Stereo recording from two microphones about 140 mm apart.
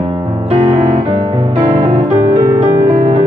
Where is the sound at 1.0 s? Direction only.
50° right (ahead or behind).